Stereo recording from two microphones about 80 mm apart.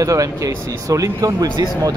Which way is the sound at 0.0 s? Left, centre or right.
Right.